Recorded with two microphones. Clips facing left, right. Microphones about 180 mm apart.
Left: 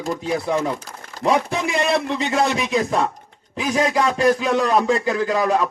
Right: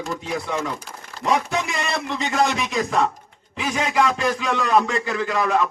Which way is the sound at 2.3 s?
35° left (ahead or behind).